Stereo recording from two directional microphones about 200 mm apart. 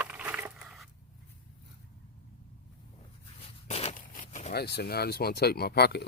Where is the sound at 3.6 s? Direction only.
30° left (ahead or behind).